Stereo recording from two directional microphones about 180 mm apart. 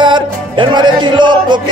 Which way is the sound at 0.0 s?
25° right (ahead or behind).